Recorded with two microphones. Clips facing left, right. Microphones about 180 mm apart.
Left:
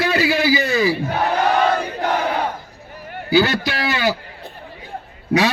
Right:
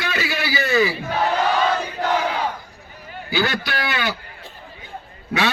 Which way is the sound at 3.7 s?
30° left (ahead or behind).